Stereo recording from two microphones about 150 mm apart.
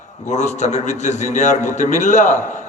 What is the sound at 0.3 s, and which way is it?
A man's voice, 50° left (ahead or behind).